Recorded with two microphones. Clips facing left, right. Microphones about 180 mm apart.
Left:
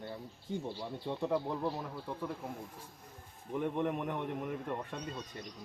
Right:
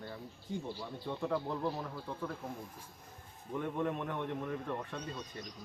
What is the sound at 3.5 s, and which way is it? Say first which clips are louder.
Speech: left 2 dB; 15° left (ahead or behind).